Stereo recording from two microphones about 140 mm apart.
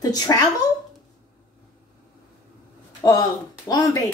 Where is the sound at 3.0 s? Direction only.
30° left (ahead or behind).